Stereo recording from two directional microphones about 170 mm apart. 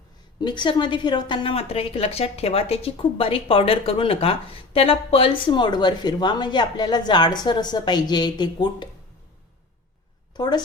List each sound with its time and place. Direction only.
0.3 s a woman's voice: 25° left (ahead or behind)
10.3 s a woman's voice: 25° left (ahead or behind)